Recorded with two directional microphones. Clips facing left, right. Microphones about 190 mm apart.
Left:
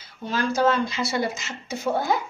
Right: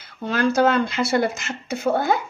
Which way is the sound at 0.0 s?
65° right (ahead or behind).